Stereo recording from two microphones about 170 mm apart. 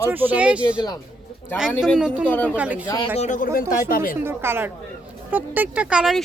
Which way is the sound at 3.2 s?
50° left (ahead or behind).